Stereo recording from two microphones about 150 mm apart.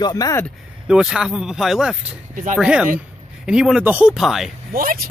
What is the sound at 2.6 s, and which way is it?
Speech, 5° right (ahead or behind).